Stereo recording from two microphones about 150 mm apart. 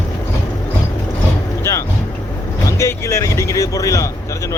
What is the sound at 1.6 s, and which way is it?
Music, 20° left (ahead or behind).